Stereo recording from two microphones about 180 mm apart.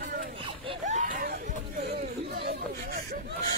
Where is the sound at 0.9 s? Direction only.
45° right (ahead or behind).